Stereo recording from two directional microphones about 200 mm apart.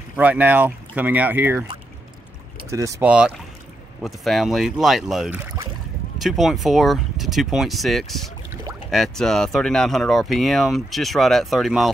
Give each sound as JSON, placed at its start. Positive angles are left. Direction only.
{"t": 0.1, "sound": "speech", "side_deg": -5}
{"t": 2.7, "sound": "speech", "side_deg": -15}
{"t": 3.1, "sound": "speech", "side_deg": -5}